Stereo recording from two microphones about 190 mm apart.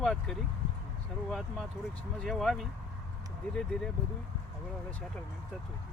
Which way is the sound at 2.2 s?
Centre (ahead or behind).